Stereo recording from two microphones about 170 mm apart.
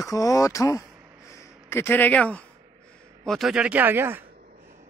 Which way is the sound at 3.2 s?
Centre (ahead or behind).